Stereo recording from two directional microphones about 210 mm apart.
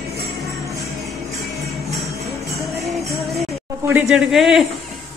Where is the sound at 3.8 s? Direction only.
5° right (ahead or behind).